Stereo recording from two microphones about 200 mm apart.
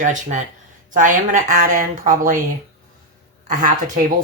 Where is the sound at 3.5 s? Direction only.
40° right (ahead or behind).